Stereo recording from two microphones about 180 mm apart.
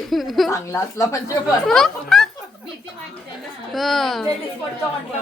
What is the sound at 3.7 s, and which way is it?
Speech, centre (ahead or behind).